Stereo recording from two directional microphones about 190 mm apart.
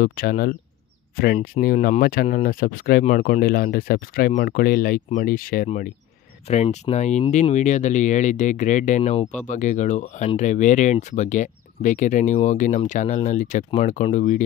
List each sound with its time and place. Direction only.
0.0 s speech: 50° left (ahead or behind)
6.4 s speech: 35° left (ahead or behind)